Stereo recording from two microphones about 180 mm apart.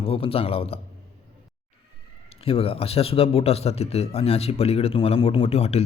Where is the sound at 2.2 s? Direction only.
30° left (ahead or behind).